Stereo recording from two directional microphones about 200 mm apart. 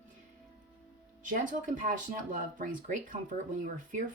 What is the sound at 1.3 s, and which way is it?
Speech, 40° right (ahead or behind).